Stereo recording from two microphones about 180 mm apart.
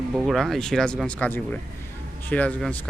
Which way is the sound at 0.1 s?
Centre (ahead or behind).